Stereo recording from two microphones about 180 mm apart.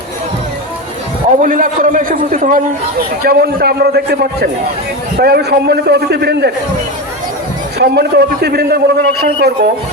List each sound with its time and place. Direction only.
1.4 s a man's voice: 50° right (ahead or behind)
3.2 s a man's voice: 60° right (ahead or behind)
7.8 s a man's voice: 65° right (ahead or behind)